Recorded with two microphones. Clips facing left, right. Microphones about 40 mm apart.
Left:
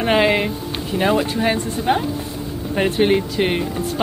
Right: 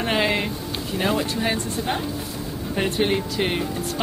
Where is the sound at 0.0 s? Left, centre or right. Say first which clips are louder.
Left 6 dB; centre.